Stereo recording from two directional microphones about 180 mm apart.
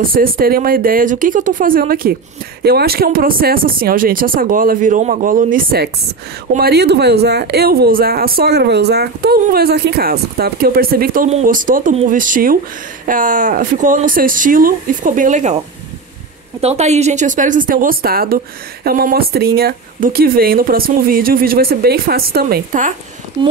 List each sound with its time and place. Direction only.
0.0 s speech: 50° right (ahead or behind)
16.6 s speech: 40° right (ahead or behind)
23.4 s speech: 25° right (ahead or behind)